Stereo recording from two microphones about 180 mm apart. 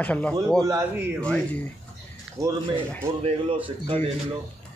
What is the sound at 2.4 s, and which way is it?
Speech, 20° right (ahead or behind).